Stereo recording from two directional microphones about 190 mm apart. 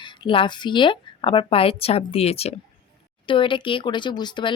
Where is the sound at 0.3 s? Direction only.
25° left (ahead or behind).